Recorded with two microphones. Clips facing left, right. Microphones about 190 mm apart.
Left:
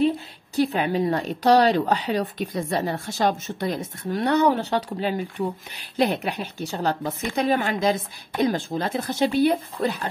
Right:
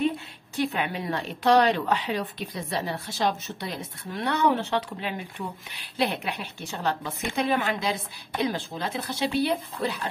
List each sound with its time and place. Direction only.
0.6 s a woman's voice: 35° left (ahead or behind)